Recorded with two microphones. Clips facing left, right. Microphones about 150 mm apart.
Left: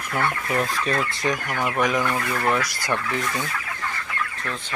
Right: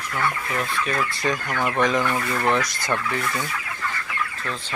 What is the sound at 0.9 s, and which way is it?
Speech, 20° left (ahead or behind).